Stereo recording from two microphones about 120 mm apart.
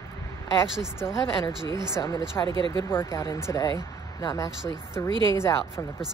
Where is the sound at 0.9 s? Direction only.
20° left (ahead or behind).